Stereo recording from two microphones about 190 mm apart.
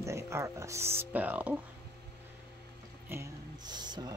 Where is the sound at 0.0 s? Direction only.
15° right (ahead or behind).